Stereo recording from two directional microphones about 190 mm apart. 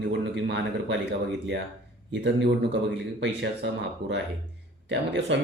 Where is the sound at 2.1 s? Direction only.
80° right.